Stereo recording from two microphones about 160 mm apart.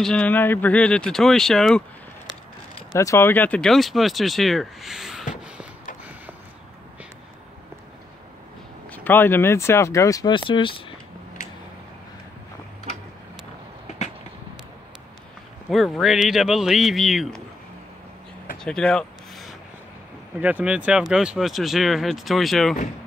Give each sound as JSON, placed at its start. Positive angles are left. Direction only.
{"t": 0.0, "sound": "speech", "side_deg": 5}
{"t": 3.0, "sound": "speech", "side_deg": 15}
{"t": 5.3, "sound": "a sound", "side_deg": -5}
{"t": 8.9, "sound": "speech", "side_deg": 10}
{"t": 15.7, "sound": "speech", "side_deg": 0}
{"t": 18.6, "sound": "a sound", "side_deg": 5}
{"t": 20.3, "sound": "speech", "side_deg": -10}